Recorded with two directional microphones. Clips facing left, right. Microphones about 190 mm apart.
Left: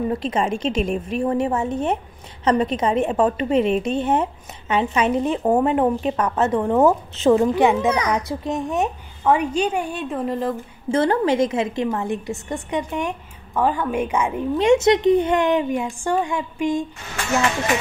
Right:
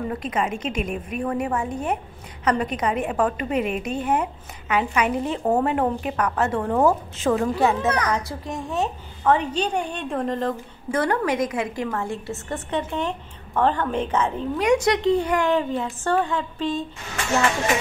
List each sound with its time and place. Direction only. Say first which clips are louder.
0.1 s a woman's voice: left 4 dB; 30° left (ahead or behind)
6.7 s a woman's voice: left 3 dB; centre (ahead or behind)
7.2 s a woman's voice: left 5 dB; 25° left (ahead or behind)
7.7 s a child's voice: left 3 dB; 10° left (ahead or behind)
10.9 s a woman's voice: left 4 dB; 25° left (ahead or behind)
14.6 s a child's voice: left 4 dB; 25° left (ahead or behind)